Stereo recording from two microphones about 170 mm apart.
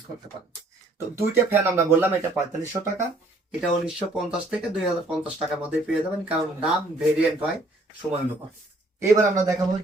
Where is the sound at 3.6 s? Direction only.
5° right (ahead or behind).